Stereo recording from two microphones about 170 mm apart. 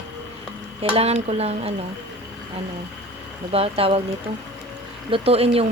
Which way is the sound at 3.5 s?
35° right (ahead or behind).